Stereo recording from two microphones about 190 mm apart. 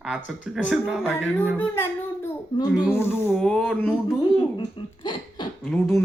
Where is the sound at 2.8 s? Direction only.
10° left (ahead or behind).